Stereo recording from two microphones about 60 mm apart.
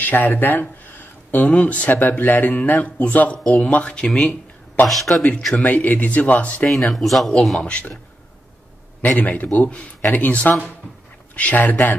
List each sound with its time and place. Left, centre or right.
0.0 s speech: left
4.2 s a sound: left
5.1 s speech: centre
6.7 s speech: centre
7.6 s speech: centre
9.0 s speech: left